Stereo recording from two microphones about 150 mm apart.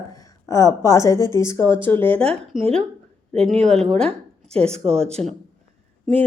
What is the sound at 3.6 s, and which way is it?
Speech, 5° left (ahead or behind).